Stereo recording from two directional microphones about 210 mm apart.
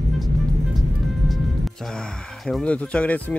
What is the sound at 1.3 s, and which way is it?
Speech, centre (ahead or behind).